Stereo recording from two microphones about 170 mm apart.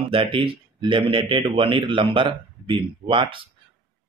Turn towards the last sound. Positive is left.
turn(degrees=-30)  # may be behind; listen again after turning